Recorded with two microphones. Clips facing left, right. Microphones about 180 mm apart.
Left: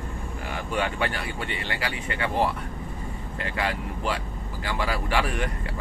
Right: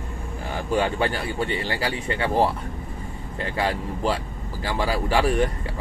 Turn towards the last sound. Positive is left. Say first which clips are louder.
# right 5 dB
turn(degrees=-35)  # may be behind; listen again after turning